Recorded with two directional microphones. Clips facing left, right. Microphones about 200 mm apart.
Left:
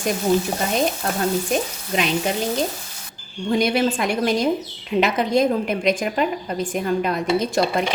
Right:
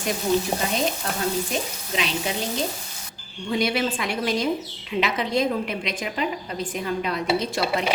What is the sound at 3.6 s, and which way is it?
A woman's voice, 45° left (ahead or behind).